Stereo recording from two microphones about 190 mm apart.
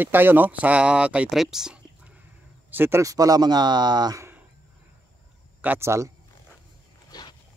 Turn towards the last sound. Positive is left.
turn(degrees=20)  # may be behind; listen again after turning